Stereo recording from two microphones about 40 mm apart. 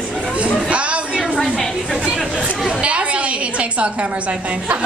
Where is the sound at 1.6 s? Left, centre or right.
Centre.